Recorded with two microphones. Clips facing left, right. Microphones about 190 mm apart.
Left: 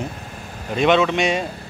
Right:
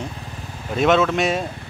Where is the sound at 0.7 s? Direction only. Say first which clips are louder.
Even; centre (ahead or behind).